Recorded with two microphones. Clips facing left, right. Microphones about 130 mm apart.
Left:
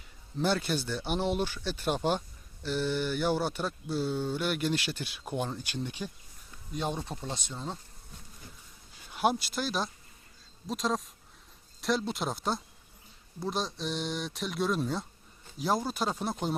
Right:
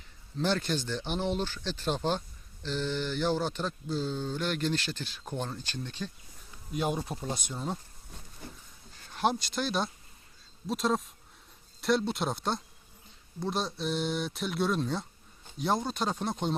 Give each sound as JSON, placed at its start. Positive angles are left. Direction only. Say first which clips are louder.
{"t": 0.3, "sound": "speech", "louder": "left 1 dB", "side_deg": 10}
{"t": 6.7, "sound": "speech", "louder": "right 3 dB", "side_deg": -5}
{"t": 9.0, "sound": "speech", "louder": "left 1 dB", "side_deg": 10}